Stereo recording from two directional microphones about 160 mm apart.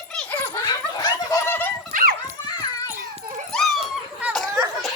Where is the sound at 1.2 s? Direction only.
20° left (ahead or behind).